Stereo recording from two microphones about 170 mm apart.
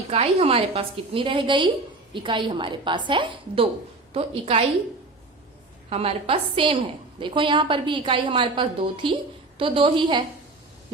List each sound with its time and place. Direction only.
0.1 s a woman's voice: 35° right (ahead or behind)
5.9 s a woman's voice: 35° right (ahead or behind)